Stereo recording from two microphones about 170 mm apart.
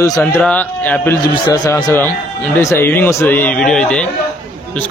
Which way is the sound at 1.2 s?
20° left (ahead or behind).